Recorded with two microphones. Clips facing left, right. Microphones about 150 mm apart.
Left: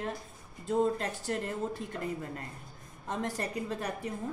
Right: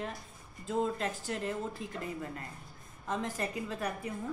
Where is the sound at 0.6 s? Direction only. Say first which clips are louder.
Left 3 dB; 40° left (ahead or behind).